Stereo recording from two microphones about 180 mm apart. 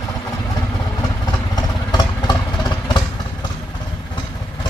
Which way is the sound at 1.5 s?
25° left (ahead or behind).